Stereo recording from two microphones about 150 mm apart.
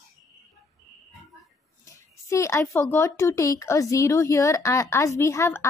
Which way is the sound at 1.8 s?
20° left (ahead or behind).